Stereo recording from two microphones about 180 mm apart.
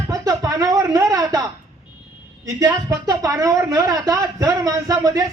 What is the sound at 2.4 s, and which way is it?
Speech, 20° right (ahead or behind).